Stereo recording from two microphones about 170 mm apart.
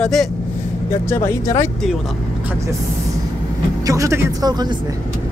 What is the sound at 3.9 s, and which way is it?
Speech, 20° right (ahead or behind).